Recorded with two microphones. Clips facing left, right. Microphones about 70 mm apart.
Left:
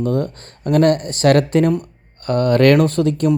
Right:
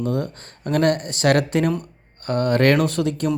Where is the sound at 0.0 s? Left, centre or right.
Left.